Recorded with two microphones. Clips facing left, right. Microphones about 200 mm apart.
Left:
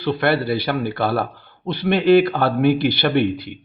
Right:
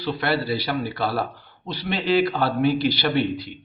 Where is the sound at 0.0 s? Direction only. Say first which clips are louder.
Left 5 dB; 55° left (ahead or behind).